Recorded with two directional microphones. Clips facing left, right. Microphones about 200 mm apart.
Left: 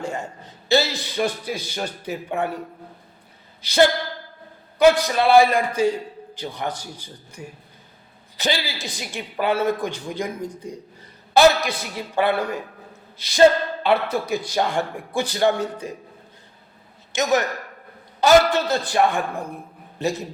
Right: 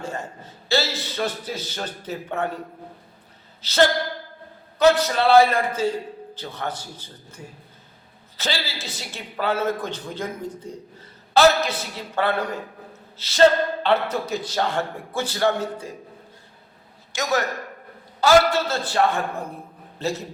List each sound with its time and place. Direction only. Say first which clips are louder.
0.0 s speech: left 2 dB; 15° left (ahead or behind)
3.6 s speech: left 2 dB; 15° left (ahead or behind)
17.1 s a man's voice: left 3 dB; 20° left (ahead or behind)